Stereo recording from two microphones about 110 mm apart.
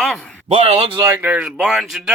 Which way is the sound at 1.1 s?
15° right (ahead or behind).